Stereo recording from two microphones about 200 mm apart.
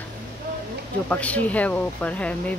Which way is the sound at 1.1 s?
5° left (ahead or behind).